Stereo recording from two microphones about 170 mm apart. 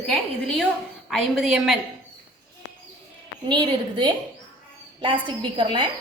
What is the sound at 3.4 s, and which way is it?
A woman's voice, 25° right (ahead or behind).